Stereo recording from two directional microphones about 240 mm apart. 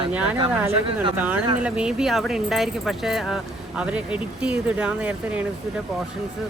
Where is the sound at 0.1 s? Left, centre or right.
Centre.